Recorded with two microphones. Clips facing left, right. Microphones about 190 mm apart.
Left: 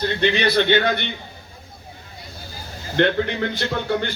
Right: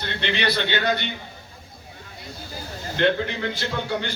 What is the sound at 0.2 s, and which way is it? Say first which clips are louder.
Speech: left 5 dB; 45° left (ahead or behind).